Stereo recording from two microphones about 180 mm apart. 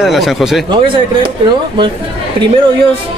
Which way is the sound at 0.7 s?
25° right (ahead or behind).